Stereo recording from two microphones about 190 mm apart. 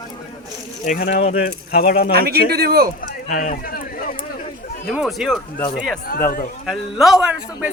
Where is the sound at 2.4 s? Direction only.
55° right (ahead or behind).